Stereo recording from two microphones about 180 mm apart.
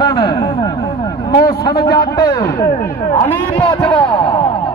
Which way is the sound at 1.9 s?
20° left (ahead or behind).